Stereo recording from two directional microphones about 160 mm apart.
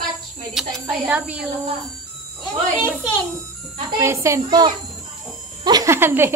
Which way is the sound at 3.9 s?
20° right (ahead or behind).